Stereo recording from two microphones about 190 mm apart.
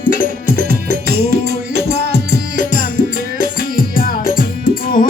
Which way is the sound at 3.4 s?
50° left (ahead or behind).